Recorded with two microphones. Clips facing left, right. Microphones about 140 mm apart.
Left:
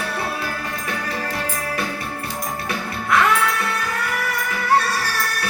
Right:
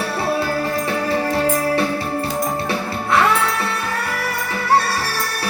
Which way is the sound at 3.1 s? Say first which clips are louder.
Right 1 dB; 30° right (ahead or behind).